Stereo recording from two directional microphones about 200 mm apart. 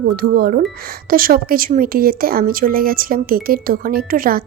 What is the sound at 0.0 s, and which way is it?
A woman's voice, 50° right (ahead or behind).